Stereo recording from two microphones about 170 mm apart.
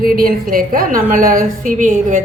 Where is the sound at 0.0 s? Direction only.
60° right (ahead or behind).